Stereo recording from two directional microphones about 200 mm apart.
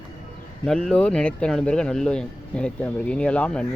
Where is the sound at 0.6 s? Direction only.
5° left (ahead or behind).